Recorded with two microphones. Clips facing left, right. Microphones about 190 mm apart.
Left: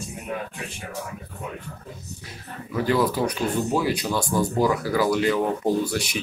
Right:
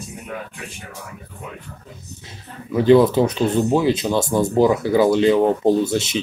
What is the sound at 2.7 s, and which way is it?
Speech, 25° right (ahead or behind).